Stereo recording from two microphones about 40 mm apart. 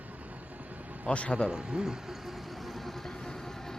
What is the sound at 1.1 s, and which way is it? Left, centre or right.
Speech, left.